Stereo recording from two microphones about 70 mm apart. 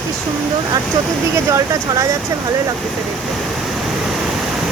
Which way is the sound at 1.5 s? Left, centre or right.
Right.